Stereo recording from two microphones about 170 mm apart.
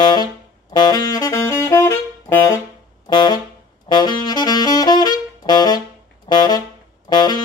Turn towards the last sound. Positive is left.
turn(degrees=25)  # may be behind; listen again after turning